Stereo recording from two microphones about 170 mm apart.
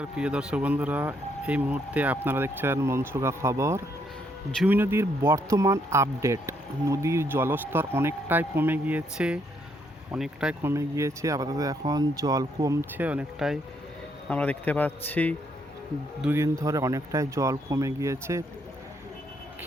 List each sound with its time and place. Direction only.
0.0 s speech: 5° right (ahead or behind)
10.6 s speech: 15° right (ahead or behind)
14.3 s speech: 10° left (ahead or behind)
16.2 s speech: 15° right (ahead or behind)